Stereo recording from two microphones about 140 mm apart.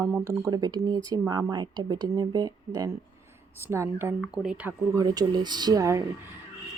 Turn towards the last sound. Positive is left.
turn(degrees=-25)  # may be behind; listen again after turning